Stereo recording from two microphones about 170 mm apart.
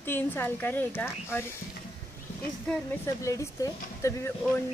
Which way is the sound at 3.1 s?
20° left (ahead or behind).